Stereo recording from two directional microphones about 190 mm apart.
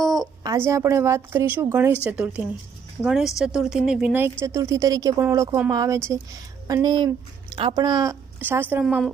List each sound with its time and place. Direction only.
0.0 s a sound: centre (ahead or behind)
0.4 s a woman's voice: 15° right (ahead or behind)
8.4 s a woman's voice: 10° right (ahead or behind)